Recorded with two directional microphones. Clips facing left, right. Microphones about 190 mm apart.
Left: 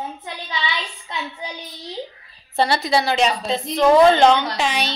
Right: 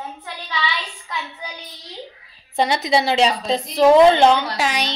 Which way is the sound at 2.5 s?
15° right (ahead or behind).